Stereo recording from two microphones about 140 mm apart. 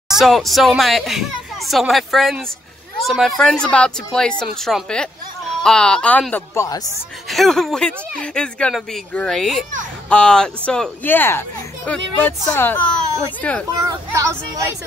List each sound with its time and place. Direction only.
0.1 s speech: centre (ahead or behind); by 6.8 s 20° left (ahead or behind)
7.2 s speech: centre (ahead or behind)
13.7 s speech: 25° right (ahead or behind)